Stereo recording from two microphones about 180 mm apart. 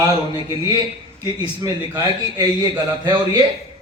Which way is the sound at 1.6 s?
20° right (ahead or behind).